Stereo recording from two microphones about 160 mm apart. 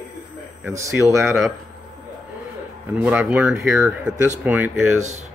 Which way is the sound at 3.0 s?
10° right (ahead or behind).